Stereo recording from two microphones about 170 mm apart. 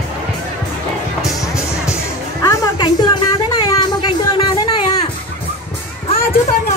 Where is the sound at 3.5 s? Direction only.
25° left (ahead or behind).